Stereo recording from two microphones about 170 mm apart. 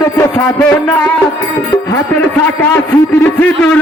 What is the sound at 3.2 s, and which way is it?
Speech, 10° left (ahead or behind).